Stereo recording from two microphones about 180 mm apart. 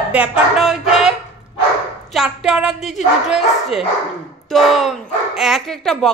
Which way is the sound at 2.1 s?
5° right (ahead or behind).